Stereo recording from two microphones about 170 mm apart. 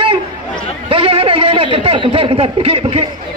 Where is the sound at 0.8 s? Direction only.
35° right (ahead or behind).